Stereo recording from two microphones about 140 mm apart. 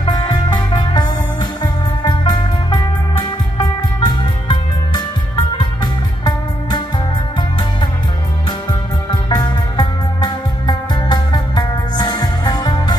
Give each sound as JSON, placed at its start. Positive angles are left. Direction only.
{"t": 0.0, "sound": "music", "side_deg": 35}
{"t": 9.1, "sound": "music", "side_deg": 30}